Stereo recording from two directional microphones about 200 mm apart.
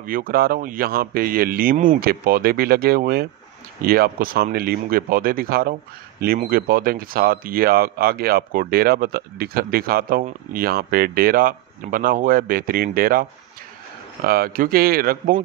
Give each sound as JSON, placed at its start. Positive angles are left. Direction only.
{"t": 0.0, "sound": "speech", "side_deg": -45}